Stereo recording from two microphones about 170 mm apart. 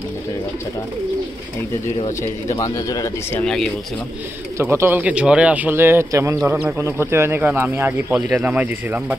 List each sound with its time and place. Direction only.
2.5 s speech: 20° left (ahead or behind)
4.6 s a man's voice: 15° right (ahead or behind)